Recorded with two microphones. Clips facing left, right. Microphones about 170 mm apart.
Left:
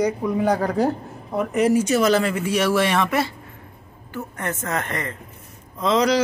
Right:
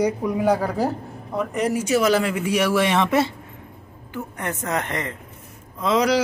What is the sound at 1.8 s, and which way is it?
Speech, 10° right (ahead or behind).